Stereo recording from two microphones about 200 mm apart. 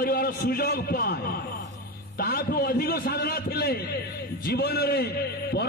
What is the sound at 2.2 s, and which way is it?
A man's voice, 50° left (ahead or behind).